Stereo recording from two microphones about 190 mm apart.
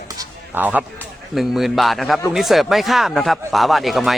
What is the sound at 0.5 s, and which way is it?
A man's voice, 10° right (ahead or behind).